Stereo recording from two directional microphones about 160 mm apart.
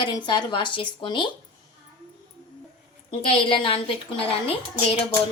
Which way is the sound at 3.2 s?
35° left (ahead or behind).